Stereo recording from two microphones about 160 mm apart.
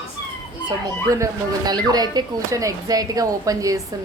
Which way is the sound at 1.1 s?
20° right (ahead or behind).